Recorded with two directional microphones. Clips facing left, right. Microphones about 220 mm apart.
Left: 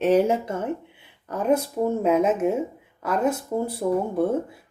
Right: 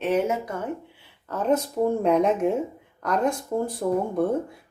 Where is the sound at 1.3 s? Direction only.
10° left (ahead or behind).